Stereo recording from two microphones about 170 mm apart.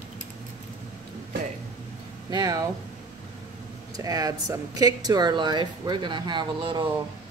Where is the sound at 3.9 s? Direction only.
20° right (ahead or behind).